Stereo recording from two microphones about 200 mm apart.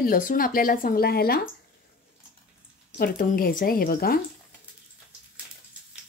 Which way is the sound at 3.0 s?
45° left (ahead or behind).